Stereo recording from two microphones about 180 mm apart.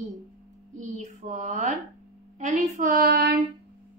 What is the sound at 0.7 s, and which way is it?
Speech, 40° right (ahead or behind).